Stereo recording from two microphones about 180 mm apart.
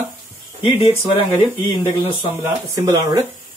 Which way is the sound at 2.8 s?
20° right (ahead or behind).